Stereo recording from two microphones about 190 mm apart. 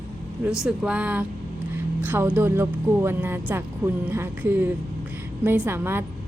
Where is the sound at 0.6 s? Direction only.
5° right (ahead or behind).